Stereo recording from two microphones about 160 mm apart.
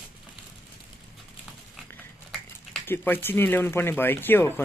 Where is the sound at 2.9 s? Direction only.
15° left (ahead or behind).